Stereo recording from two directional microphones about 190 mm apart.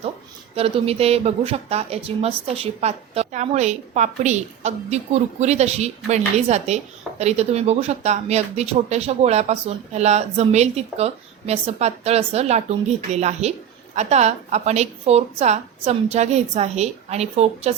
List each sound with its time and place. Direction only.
0.5 s speech: 30° right (ahead or behind)